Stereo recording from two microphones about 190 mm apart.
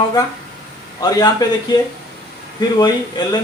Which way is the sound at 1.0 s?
20° left (ahead or behind).